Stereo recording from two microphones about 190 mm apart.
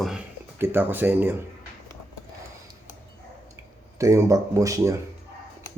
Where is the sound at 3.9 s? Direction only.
15° right (ahead or behind).